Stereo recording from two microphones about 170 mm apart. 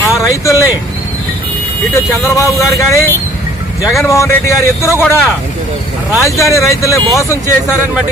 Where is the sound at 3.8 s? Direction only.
Centre (ahead or behind).